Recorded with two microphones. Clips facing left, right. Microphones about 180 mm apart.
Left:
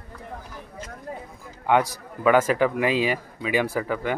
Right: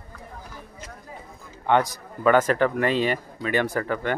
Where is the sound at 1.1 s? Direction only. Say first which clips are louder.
Left 9 dB; 55° left (ahead or behind).